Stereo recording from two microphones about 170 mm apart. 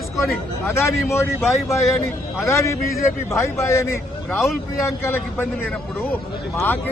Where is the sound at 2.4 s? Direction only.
15° left (ahead or behind).